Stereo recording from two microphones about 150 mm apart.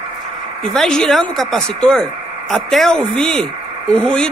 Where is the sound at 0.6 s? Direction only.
5° left (ahead or behind).